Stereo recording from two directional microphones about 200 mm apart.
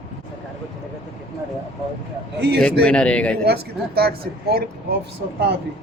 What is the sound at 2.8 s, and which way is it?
Speech, 5° left (ahead or behind).